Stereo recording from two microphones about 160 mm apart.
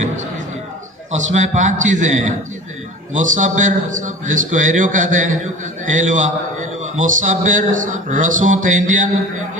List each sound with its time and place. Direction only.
1.1 s a man's voice: 50° right (ahead or behind)